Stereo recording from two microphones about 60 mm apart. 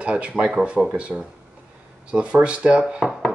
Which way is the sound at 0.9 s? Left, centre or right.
Centre.